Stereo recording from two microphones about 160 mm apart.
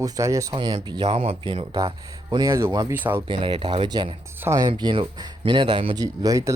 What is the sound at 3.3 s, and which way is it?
Speech, 30° right (ahead or behind).